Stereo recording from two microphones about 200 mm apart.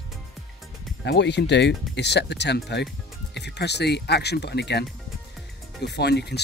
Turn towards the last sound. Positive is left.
turn(degrees=55)  # may be behind; listen again after turning